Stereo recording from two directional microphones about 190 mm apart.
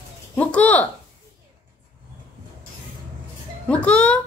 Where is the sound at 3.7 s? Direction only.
5° left (ahead or behind).